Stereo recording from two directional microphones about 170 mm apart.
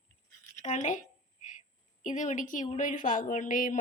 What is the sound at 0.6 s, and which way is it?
Speech, 45° left (ahead or behind).